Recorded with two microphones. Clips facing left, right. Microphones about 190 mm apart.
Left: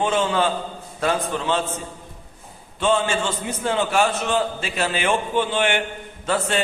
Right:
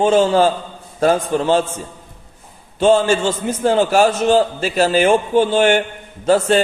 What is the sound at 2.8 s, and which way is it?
A man's voice, 40° right (ahead or behind).